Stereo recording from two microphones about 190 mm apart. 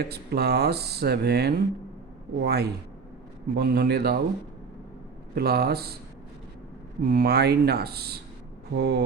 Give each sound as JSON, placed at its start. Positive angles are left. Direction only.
{"t": 0.0, "sound": "speech", "side_deg": -55}
{"t": 5.3, "sound": "speech", "side_deg": -55}
{"t": 7.1, "sound": "speech", "side_deg": -55}